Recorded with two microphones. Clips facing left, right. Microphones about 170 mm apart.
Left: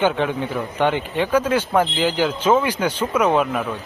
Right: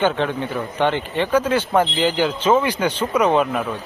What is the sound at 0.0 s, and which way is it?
Speech, 10° left (ahead or behind).